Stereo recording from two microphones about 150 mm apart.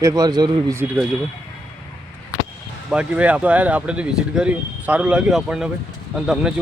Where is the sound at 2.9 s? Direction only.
10° right (ahead or behind).